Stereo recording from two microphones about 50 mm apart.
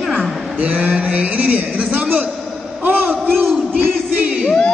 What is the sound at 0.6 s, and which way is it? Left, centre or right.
Speech, right.